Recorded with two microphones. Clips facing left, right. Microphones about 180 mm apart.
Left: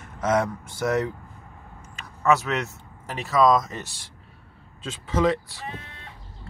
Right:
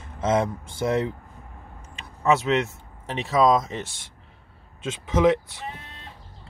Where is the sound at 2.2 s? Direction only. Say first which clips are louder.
Right 1 dB; 20° right (ahead or behind).